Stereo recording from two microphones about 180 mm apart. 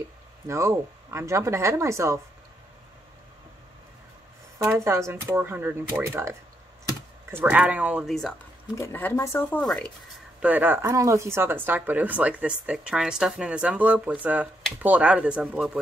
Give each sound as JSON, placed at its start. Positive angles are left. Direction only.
{"t": 0.5, "sound": "speech", "side_deg": -15}
{"t": 4.6, "sound": "speech", "side_deg": -15}
{"t": 8.7, "sound": "speech", "side_deg": 15}
{"t": 10.4, "sound": "speech", "side_deg": -10}